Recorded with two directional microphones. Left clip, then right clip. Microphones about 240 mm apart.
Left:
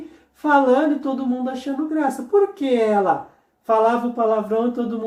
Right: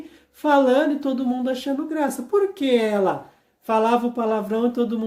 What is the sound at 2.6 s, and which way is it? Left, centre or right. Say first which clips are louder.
Speech: left 2 dB; right.